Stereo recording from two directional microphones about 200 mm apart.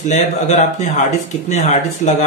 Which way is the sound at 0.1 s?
35° left (ahead or behind).